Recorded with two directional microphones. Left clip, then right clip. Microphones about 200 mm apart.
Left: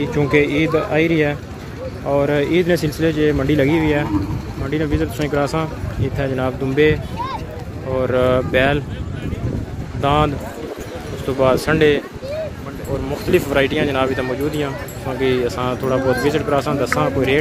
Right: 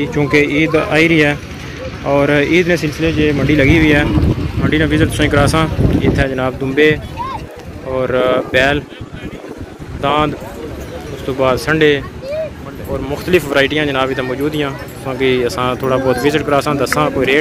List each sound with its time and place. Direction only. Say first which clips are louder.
0.0 s speech: right 3 dB; 5° left (ahead or behind)
2.7 s speech: right 2 dB; 25° left (ahead or behind); by 8.8 s 5° left (ahead or behind)
10.0 s speech: right 2 dB; 15° left (ahead or behind)
13.1 s speech: right 4 dB; centre (ahead or behind)